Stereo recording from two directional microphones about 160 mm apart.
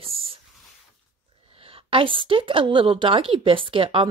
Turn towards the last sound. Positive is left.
turn(degrees=-35)  # may be behind; listen again after turning